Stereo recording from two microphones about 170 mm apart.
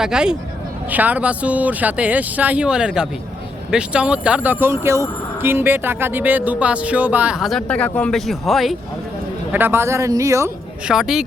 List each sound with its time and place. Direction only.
0.0 s speech: 5° right (ahead or behind)
9.5 s speech: 10° right (ahead or behind)
10.8 s speech: 5° right (ahead or behind)